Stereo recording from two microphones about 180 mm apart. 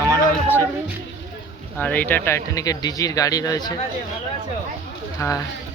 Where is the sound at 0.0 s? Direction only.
15° left (ahead or behind).